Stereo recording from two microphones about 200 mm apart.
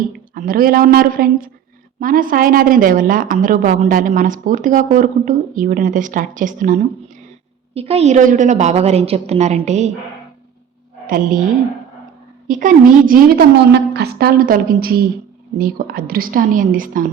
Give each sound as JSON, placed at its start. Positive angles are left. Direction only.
{"t": 0.3, "sound": "speech", "side_deg": -45}
{"t": 7.7, "sound": "a woman's voice", "side_deg": -30}
{"t": 11.0, "sound": "a woman's voice", "side_deg": -45}
{"t": 12.5, "sound": "speech", "side_deg": -40}